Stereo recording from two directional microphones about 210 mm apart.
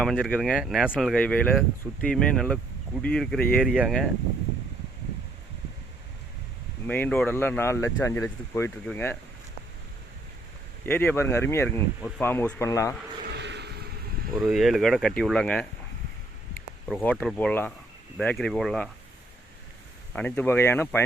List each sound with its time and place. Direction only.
0.0 s speech: centre (ahead or behind)
6.8 s speech: 5° left (ahead or behind)
10.8 s speech: 10° left (ahead or behind)
13.3 s vehicle: 55° right (ahead or behind)
14.3 s speech: centre (ahead or behind)
16.9 s speech: 5° left (ahead or behind)
20.1 s speech: 5° left (ahead or behind)